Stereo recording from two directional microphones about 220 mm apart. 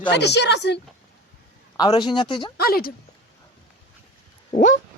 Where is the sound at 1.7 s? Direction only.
20° left (ahead or behind).